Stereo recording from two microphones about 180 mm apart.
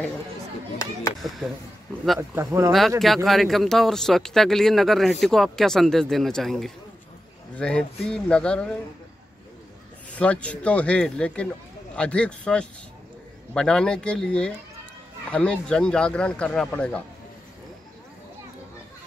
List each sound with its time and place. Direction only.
0.8 s a sound: 20° left (ahead or behind)
1.2 s speech: centre (ahead or behind)
2.1 s speech: 15° right (ahead or behind)
3.3 s speech: centre (ahead or behind)
10.1 s speech: 5° left (ahead or behind)